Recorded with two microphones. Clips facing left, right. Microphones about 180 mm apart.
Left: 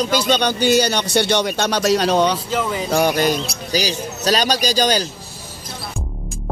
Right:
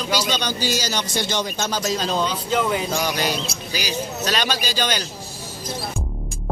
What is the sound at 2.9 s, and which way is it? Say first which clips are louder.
Speech: left 7 dB; 55° left (ahead or behind).